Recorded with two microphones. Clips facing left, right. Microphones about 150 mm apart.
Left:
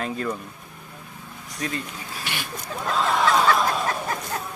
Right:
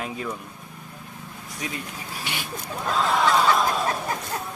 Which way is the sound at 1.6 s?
10° right (ahead or behind).